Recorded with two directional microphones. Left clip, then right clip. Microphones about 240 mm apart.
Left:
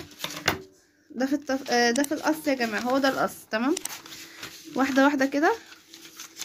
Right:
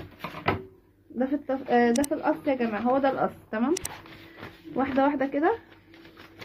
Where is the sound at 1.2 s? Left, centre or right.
Left.